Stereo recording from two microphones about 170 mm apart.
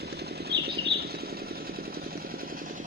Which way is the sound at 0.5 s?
80° right.